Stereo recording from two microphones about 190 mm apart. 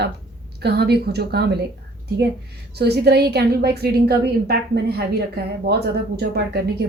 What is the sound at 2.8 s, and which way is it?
Speech, 60° right (ahead or behind).